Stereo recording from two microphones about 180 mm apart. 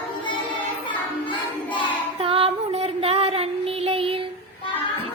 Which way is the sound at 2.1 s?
30° right (ahead or behind).